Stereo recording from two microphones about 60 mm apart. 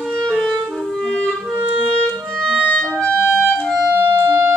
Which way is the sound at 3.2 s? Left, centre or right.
Left.